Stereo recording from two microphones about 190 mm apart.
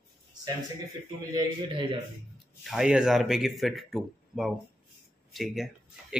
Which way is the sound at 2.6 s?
5° right (ahead or behind).